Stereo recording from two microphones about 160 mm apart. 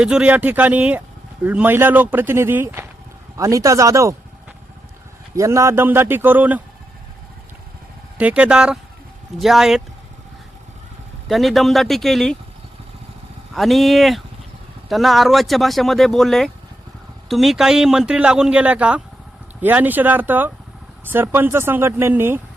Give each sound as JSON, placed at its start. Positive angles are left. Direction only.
{"t": 0.0, "sound": "speech", "side_deg": -5}
{"t": 5.3, "sound": "speech", "side_deg": -20}
{"t": 8.2, "sound": "a man's voice", "side_deg": -10}
{"t": 11.3, "sound": "a man's voice", "side_deg": 0}
{"t": 13.5, "sound": "a man's voice", "side_deg": 0}